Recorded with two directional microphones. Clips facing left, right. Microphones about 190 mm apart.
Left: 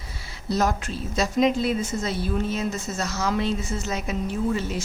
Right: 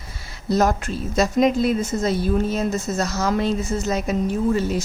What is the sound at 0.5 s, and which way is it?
A woman's voice, 45° right (ahead or behind).